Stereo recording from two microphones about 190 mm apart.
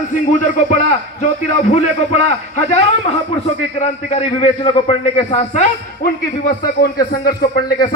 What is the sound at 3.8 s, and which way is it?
A man's voice, 35° left (ahead or behind).